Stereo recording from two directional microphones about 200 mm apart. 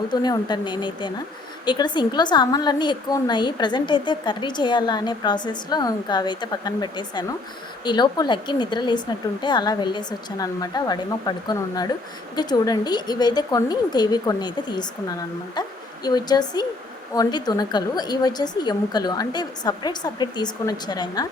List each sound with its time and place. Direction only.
0.1 s a woman's voice: 20° left (ahead or behind)
16.0 s a woman's voice: 20° left (ahead or behind)